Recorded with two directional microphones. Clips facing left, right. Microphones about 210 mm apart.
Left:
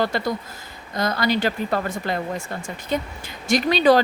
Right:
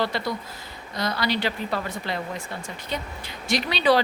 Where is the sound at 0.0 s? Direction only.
45° left (ahead or behind).